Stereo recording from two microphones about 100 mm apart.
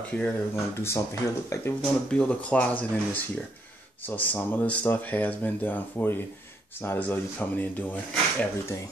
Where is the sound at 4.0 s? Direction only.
20° left (ahead or behind).